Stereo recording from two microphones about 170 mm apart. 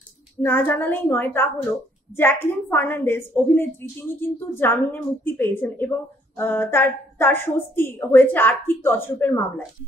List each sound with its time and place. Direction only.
0.4 s a woman's voice: 10° left (ahead or behind)